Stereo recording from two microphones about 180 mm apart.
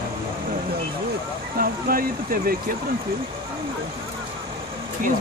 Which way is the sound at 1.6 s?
55° right (ahead or behind).